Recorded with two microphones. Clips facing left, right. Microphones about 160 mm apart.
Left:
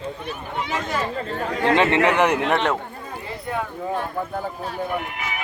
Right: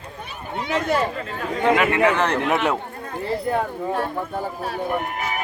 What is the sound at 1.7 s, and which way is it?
Speech, 25° left (ahead or behind).